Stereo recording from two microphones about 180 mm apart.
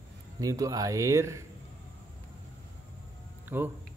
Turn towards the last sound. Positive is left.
turn(degrees=-10)  # may be behind; listen again after turning